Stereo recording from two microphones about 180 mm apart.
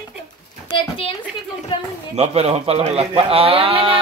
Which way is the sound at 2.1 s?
35° right (ahead or behind).